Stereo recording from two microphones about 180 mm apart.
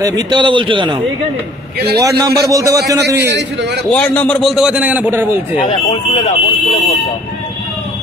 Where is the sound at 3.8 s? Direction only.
10° left (ahead or behind); by 5.4 s 10° right (ahead or behind).